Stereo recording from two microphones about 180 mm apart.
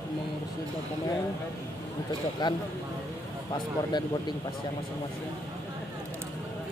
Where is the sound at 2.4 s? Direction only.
25° left (ahead or behind).